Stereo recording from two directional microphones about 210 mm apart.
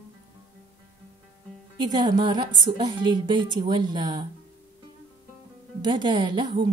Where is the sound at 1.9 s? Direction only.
20° right (ahead or behind).